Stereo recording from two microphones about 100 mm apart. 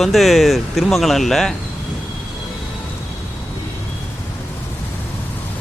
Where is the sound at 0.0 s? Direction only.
Centre (ahead or behind).